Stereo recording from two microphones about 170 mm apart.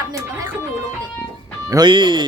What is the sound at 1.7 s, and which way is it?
Speech, 25° right (ahead or behind).